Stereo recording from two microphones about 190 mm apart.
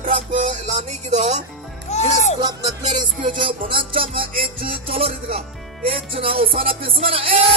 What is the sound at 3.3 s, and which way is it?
Music, 25° right (ahead or behind).